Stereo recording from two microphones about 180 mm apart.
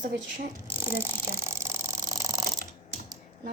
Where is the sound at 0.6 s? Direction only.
10° right (ahead or behind).